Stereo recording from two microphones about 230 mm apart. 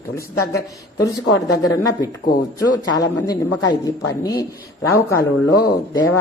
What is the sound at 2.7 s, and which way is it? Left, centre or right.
A woman's voice, centre.